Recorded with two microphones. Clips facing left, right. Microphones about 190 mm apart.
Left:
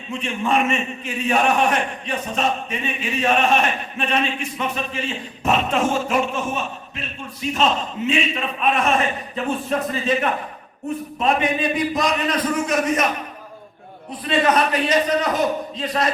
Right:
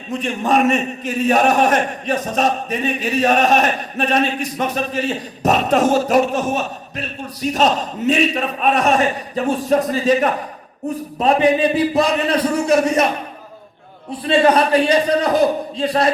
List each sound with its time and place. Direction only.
0.1 s a man's voice: 40° right (ahead or behind)